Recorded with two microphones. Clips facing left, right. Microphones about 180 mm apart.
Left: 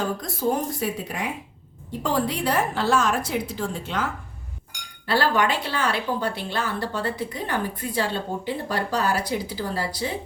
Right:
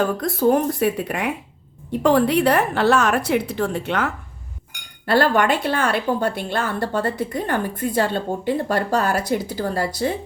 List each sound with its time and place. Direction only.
0.0 s a woman's voice: 60° right (ahead or behind)
5.0 s a woman's voice: 55° right (ahead or behind)